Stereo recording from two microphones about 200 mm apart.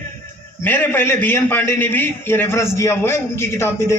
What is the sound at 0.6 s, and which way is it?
A man's voice, 10° left (ahead or behind).